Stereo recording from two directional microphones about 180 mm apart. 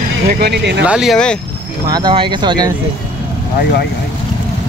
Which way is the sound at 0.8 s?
5° right (ahead or behind).